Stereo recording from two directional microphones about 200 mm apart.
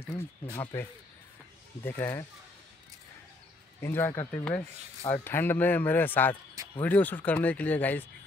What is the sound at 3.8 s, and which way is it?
Speech, 10° left (ahead or behind).